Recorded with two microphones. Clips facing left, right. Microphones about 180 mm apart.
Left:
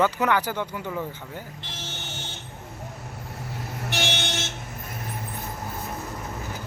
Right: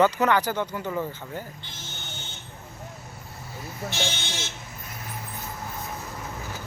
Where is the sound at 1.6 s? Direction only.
80° left.